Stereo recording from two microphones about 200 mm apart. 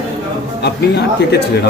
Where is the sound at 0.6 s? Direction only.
55° left (ahead or behind).